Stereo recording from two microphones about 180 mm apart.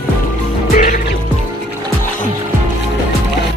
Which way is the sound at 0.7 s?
45° left (ahead or behind).